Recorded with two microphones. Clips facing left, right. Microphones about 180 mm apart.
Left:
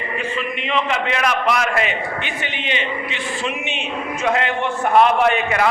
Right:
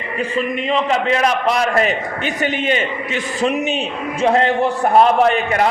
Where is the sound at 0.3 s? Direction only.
35° right (ahead or behind).